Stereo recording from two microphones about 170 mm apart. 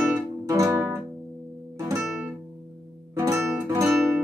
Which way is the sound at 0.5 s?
15° right (ahead or behind).